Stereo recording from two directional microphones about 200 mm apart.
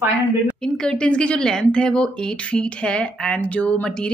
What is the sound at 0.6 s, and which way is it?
Speech, 5° left (ahead or behind).